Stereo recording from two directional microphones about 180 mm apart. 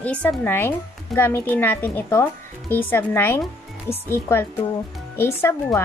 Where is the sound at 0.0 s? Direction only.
5° left (ahead or behind).